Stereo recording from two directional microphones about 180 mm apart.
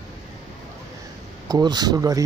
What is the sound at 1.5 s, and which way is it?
Speech, 25° right (ahead or behind).